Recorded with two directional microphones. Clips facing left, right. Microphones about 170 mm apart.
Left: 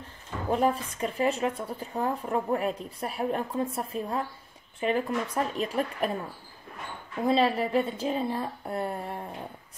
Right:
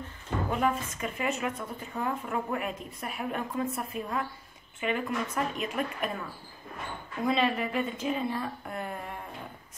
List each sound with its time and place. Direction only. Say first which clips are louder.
0.5 s a woman's voice: left 5 dB; 35° left (ahead or behind)
7.2 s a woman's voice: left 3 dB; 35° left (ahead or behind)